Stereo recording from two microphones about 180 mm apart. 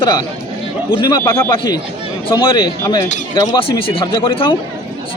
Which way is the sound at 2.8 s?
20° left (ahead or behind).